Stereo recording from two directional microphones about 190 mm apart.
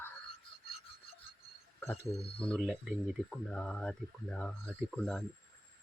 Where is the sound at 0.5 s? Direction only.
25° left (ahead or behind).